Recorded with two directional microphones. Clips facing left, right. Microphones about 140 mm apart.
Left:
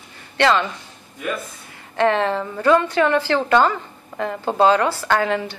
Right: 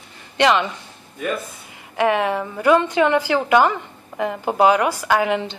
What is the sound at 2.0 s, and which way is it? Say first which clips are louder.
A woman's voice: even; 10° right (ahead or behind).